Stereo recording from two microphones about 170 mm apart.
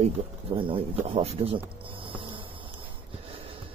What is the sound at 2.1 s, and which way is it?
Insect, 30° right (ahead or behind).